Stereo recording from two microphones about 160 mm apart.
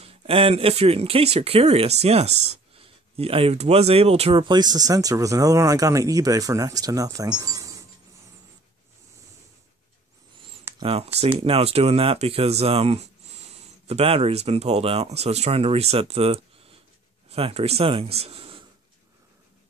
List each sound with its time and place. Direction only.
0.0 s speech: 35° right (ahead or behind)
10.8 s speech: 35° right (ahead or behind)